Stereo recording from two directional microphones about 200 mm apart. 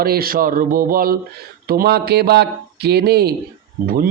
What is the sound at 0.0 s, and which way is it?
A man's voice, 50° right (ahead or behind).